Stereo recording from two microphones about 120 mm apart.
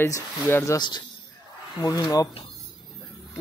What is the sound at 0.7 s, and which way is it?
Speech, 40° left (ahead or behind).